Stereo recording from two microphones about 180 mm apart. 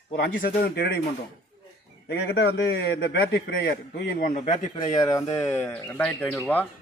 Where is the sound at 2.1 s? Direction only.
70° left (ahead or behind).